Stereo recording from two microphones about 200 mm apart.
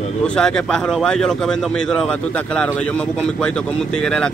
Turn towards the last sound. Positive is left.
turn(degrees=5)  # may be behind; listen again after turning